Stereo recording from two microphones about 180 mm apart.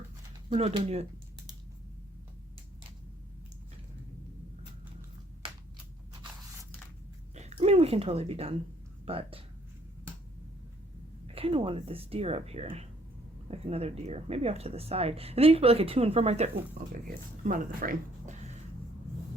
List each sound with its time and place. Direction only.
0.5 s speech: 35° right (ahead or behind)
7.3 s a sound: 35° right (ahead or behind)
9.0 s speech: 30° right (ahead or behind)
11.3 s speech: 30° right (ahead or behind)
16.7 s speech: 50° right (ahead or behind)